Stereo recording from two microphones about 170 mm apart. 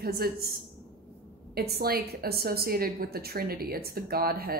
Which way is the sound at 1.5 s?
70° right (ahead or behind).